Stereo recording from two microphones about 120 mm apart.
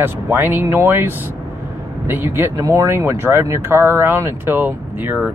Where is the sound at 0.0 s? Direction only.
15° right (ahead or behind).